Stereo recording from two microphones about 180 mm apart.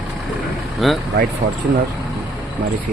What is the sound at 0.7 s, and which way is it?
Speech, centre (ahead or behind).